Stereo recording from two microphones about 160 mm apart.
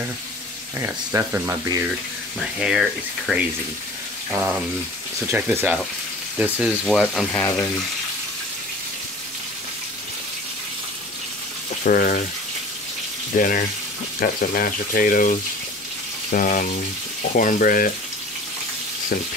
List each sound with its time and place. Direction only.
0.7 s speech: 20° right (ahead or behind)
2.3 s speech: 5° right (ahead or behind)
4.3 s speech: 15° right (ahead or behind)
7.3 s frying: 10° left (ahead or behind)
11.8 s speech: 60° left (ahead or behind)
13.4 s speech: 60° left (ahead or behind)